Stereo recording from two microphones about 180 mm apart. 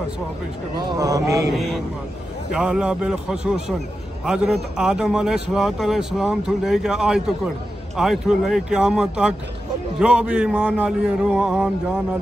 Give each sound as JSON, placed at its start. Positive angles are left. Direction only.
{"t": 0.7, "sound": "speech", "side_deg": -20}
{"t": 1.5, "sound": "a man's voice", "side_deg": 0}